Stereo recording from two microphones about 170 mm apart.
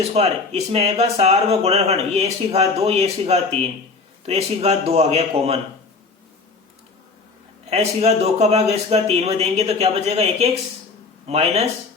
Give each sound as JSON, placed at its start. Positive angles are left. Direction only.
{"t": 0.0, "sound": "speech", "side_deg": -40}
{"t": 7.7, "sound": "speech", "side_deg": -40}